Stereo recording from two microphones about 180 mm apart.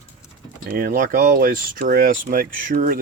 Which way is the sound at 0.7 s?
55° right (ahead or behind).